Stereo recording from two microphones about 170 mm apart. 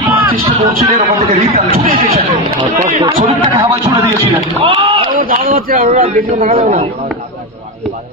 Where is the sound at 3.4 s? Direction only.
25° right (ahead or behind).